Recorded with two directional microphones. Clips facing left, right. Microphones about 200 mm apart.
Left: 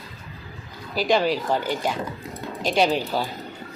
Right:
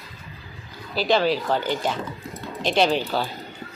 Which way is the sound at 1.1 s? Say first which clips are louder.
Even; 10° left (ahead or behind).